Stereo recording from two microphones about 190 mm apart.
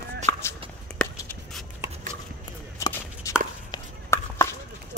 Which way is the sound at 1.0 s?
5° left (ahead or behind).